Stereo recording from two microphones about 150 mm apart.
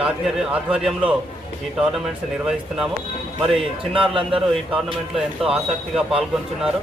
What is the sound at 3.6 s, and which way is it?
Speech, 35° right (ahead or behind).